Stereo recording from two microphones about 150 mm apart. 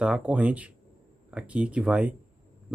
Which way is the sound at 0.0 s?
5° right (ahead or behind).